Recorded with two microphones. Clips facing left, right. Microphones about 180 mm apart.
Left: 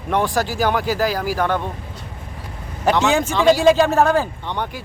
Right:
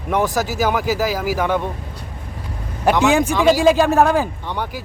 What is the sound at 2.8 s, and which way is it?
Speech, 10° right (ahead or behind).